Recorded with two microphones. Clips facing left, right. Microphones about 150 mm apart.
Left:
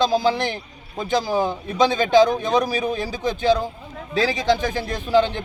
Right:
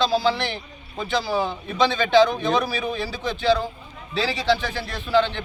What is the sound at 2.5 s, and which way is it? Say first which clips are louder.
Speech: left 3 dB; 45° left (ahead or behind).